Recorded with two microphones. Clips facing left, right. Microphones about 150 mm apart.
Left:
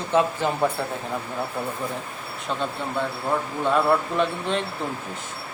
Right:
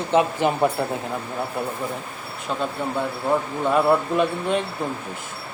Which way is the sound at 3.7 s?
10° right (ahead or behind).